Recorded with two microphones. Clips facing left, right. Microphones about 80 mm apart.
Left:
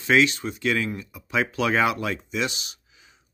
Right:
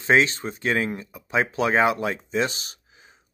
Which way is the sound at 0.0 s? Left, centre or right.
Right.